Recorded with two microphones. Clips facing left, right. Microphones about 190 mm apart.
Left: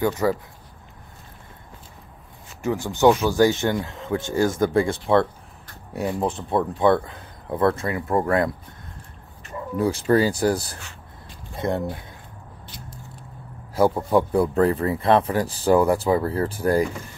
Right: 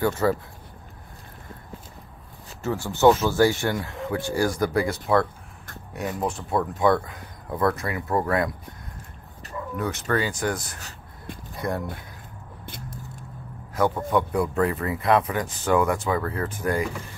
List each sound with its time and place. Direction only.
0.0 s speech: 15° left (ahead or behind)
2.6 s speech: 15° left (ahead or behind); by 6.3 s 30° left (ahead or behind)
6.3 s speech: centre (ahead or behind)
6.8 s speech: 30° left (ahead or behind)
9.8 s speech: 30° left (ahead or behind)
12.6 s a sound: 55° right (ahead or behind)
13.7 s speech: 30° left (ahead or behind)